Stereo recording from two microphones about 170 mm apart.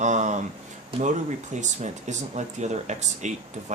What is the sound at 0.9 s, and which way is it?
Speech, 35° right (ahead or behind).